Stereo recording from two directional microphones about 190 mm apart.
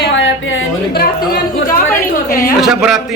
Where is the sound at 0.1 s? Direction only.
80° left; by 1.7 s 55° left (ahead or behind).